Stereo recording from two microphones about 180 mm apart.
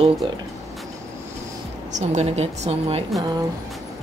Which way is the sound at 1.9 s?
40° right (ahead or behind).